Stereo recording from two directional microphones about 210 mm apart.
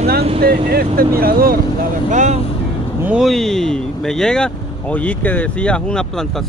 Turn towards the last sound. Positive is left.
turn(degrees=0)  # may be behind; listen again after turning